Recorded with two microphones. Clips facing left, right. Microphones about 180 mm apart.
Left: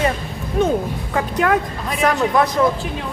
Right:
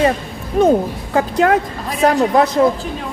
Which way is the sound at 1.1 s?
30° right (ahead or behind).